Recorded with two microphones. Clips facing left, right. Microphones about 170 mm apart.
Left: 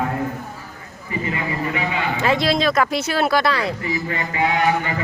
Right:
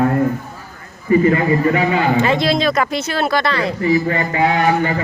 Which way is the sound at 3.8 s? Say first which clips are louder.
Right 9 dB; 40° right (ahead or behind).